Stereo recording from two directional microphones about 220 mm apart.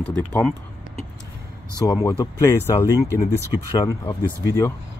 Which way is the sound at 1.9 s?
15° left (ahead or behind).